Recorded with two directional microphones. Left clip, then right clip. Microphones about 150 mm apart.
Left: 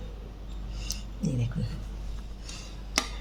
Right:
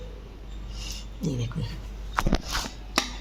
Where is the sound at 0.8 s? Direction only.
45° right (ahead or behind).